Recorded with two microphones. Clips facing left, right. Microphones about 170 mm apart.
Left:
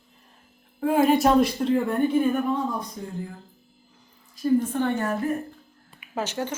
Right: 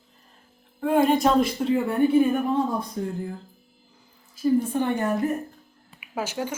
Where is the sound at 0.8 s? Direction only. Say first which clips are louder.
Even; 5° left (ahead or behind).